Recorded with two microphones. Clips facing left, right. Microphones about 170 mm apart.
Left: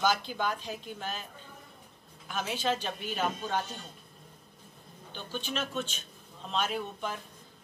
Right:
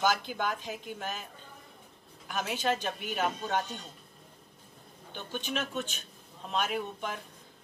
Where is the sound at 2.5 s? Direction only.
15° right (ahead or behind).